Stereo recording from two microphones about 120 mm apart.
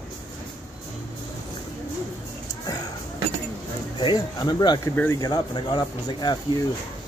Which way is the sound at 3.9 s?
40° left (ahead or behind).